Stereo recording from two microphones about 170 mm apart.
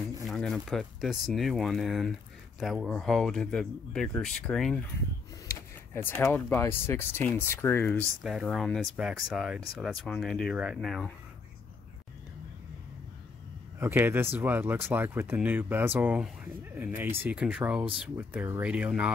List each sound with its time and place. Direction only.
0.3 s speech: centre (ahead or behind)
5.5 s a sound: 15° left (ahead or behind)
6.2 s speech: 15° left (ahead or behind)
8.2 s speech: centre (ahead or behind)
13.7 s speech: 15° right (ahead or behind)